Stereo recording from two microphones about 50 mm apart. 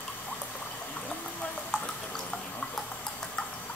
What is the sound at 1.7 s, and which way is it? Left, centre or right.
Water, centre.